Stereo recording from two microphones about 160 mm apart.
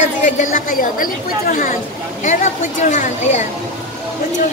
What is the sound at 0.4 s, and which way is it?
A woman's voice, 60° left (ahead or behind).